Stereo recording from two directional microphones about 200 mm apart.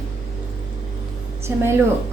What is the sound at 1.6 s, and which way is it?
Speech, 10° right (ahead or behind).